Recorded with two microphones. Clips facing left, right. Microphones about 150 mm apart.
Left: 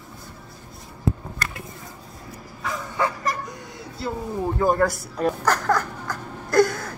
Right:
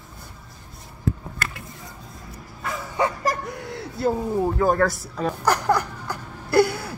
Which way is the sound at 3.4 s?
65° right (ahead or behind).